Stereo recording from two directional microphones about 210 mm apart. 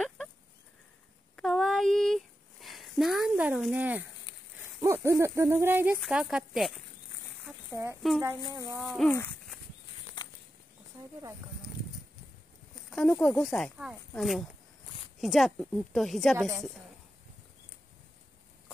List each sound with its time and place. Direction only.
1.3 s a sound: centre (ahead or behind)
4.7 s speech: 10° right (ahead or behind)
8.0 s speech: centre (ahead or behind)
8.5 s speech: 15° right (ahead or behind)
8.9 s speech: 5° left (ahead or behind)
10.2 s a sound: 20° left (ahead or behind)
12.9 s speech: 5° left (ahead or behind)
16.3 s speech: 15° right (ahead or behind)